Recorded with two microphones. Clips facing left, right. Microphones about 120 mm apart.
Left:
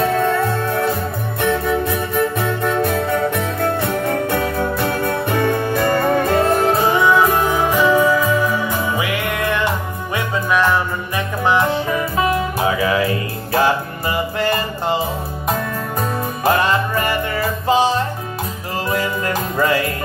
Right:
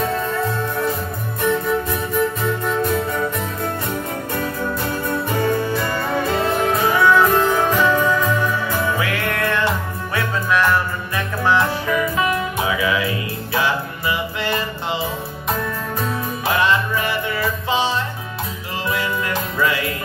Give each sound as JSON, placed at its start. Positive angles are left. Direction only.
{"t": 0.0, "sound": "music", "side_deg": 65}
{"t": 6.7, "sound": "music", "side_deg": 30}
{"t": 16.0, "sound": "music", "side_deg": 45}